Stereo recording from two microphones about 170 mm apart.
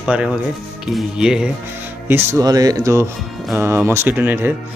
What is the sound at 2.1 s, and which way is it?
Speech, 15° right (ahead or behind).